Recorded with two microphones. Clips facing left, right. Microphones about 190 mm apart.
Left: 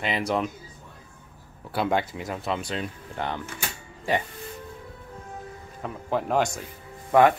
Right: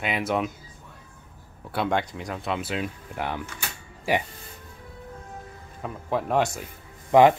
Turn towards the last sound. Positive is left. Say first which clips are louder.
# right 2 dB
turn(degrees=-20)  # may be behind; listen again after turning